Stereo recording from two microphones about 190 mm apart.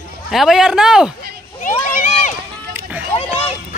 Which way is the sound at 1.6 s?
45° left (ahead or behind).